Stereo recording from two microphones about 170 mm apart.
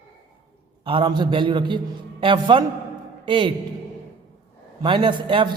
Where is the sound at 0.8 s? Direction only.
30° right (ahead or behind).